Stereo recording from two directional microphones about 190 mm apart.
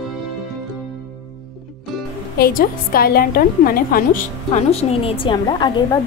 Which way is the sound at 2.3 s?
50° left (ahead or behind).